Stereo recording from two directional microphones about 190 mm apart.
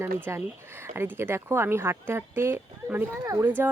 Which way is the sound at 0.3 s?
15° right (ahead or behind).